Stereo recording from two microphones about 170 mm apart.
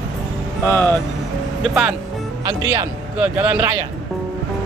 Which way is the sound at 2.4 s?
20° right (ahead or behind).